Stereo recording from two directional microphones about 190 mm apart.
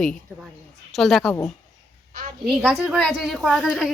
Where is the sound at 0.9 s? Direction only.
Centre (ahead or behind).